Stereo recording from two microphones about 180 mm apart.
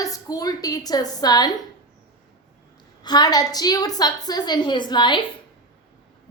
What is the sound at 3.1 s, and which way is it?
A woman's voice, 20° left (ahead or behind).